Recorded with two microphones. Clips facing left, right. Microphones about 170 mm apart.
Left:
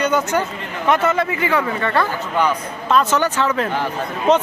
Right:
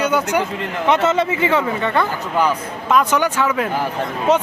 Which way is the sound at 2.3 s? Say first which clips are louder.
Right 1 dB; 10° right (ahead or behind).